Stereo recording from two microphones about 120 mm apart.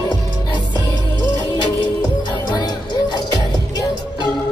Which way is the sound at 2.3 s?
35° left (ahead or behind).